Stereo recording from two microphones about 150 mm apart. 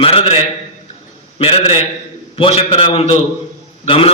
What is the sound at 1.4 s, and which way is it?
A man's voice, 40° left (ahead or behind).